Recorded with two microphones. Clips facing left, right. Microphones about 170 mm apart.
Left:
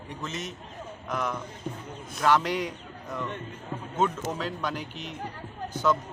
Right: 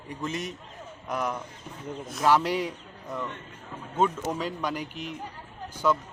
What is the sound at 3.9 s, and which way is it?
A man's voice, 10° right (ahead or behind).